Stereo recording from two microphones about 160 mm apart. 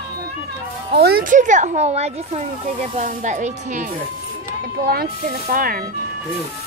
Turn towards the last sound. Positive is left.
turn(degrees=-60)  # may be behind; listen again after turning